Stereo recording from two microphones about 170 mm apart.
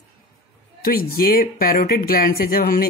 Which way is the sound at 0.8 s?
60° left (ahead or behind).